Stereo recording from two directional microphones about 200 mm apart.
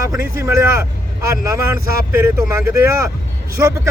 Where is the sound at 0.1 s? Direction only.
10° right (ahead or behind).